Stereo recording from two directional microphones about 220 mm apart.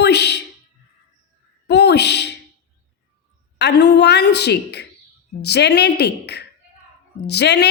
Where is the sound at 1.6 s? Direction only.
50° left (ahead or behind).